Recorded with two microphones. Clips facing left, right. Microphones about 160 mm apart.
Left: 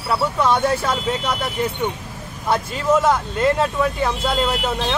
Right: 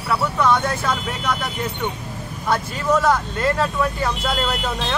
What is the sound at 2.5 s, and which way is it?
Speech, 25° left (ahead or behind).